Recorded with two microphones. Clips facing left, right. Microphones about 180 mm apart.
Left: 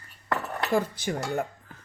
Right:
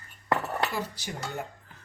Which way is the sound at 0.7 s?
50° left (ahead or behind).